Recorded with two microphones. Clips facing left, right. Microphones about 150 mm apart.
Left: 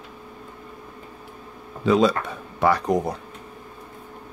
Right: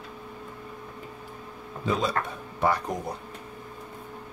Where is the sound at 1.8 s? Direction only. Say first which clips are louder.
Left 8 dB; 85° left.